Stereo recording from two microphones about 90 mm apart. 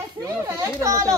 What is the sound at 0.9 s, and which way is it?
Speech, 35° right (ahead or behind).